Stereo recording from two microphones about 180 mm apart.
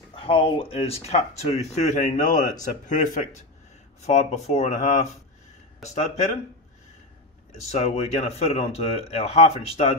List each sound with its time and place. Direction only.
0.1 s speech: 30° left (ahead or behind)
7.7 s speech: 35° left (ahead or behind)